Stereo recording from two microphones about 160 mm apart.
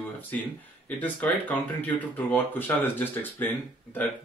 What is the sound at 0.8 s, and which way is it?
Speech, 10° left (ahead or behind).